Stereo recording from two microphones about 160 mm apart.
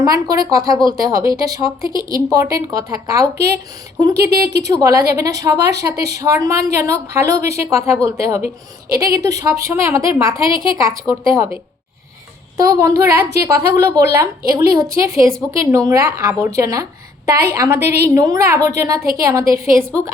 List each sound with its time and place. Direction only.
0.0 s a woman's voice: 20° right (ahead or behind)
4.3 s speech: 75° right (ahead or behind)
4.6 s a woman's voice: 20° right (ahead or behind)
10.3 s a woman's voice: 30° left (ahead or behind)
11.3 s a woman's voice: 10° right (ahead or behind)